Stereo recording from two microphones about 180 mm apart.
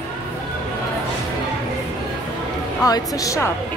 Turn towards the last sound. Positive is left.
turn(degrees=20)  # may be behind; listen again after turning